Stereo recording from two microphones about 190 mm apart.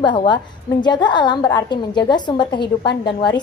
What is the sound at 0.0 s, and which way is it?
A woman's voice, 25° left (ahead or behind).